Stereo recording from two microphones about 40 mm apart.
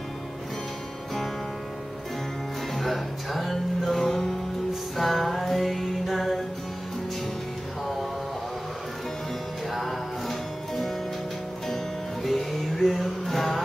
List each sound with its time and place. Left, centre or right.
2.7 s music: centre
7.8 s a sound: centre
9.7 s music: centre